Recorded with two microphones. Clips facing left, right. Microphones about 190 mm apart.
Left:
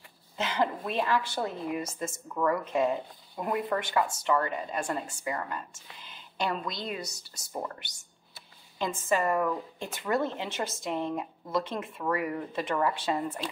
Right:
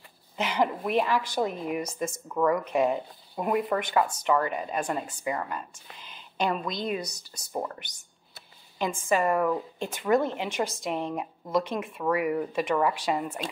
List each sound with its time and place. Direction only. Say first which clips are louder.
0.4 s a woman's voice: right 2 dB; 15° right (ahead or behind)